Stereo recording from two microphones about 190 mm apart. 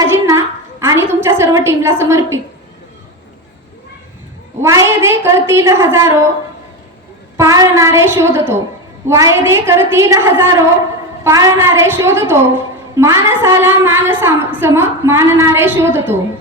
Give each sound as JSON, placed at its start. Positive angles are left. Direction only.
{"t": 0.0, "sound": "a sound", "side_deg": -15}
{"t": 4.6, "sound": "a woman's voice", "side_deg": -15}
{"t": 7.3, "sound": "a woman's voice", "side_deg": -20}